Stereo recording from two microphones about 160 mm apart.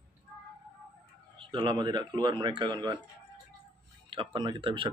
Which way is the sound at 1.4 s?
30° right (ahead or behind).